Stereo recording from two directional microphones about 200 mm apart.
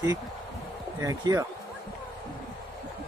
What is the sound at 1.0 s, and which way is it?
Speech, 15° right (ahead or behind).